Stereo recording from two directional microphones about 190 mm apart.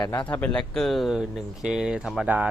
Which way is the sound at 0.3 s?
5° left (ahead or behind).